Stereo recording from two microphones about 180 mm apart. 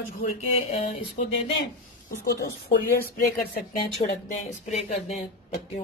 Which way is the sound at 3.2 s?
55° left (ahead or behind).